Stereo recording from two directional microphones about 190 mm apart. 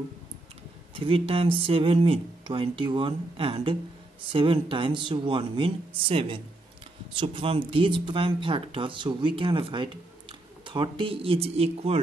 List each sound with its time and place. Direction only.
0.9 s speech: 30° right (ahead or behind)